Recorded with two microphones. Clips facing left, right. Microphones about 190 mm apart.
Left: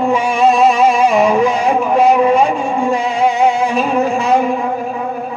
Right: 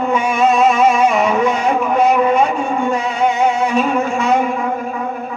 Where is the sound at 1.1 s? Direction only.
35° left (ahead or behind).